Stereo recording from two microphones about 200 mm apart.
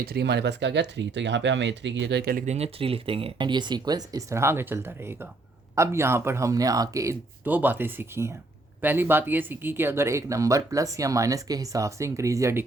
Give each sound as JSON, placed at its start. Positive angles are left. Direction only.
{"t": 0.0, "sound": "speech", "side_deg": -55}
{"t": 2.5, "sound": "speech", "side_deg": -30}